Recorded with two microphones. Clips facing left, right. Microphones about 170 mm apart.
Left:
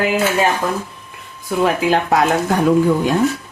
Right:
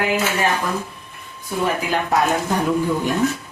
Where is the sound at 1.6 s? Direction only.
85° left.